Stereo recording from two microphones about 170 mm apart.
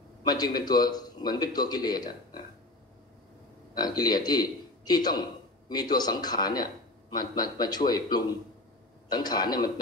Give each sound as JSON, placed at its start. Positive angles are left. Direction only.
{"t": 0.2, "sound": "a man's voice", "side_deg": 25}
{"t": 3.7, "sound": "a man's voice", "side_deg": 25}